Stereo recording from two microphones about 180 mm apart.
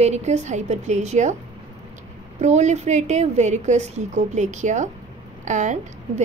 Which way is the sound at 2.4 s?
40° right (ahead or behind).